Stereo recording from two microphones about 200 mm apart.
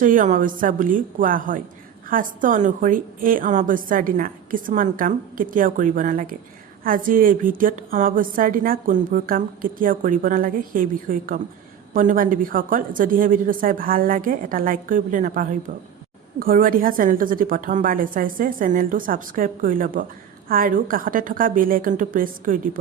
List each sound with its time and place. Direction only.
0.0 s a woman's voice: 40° right (ahead or behind)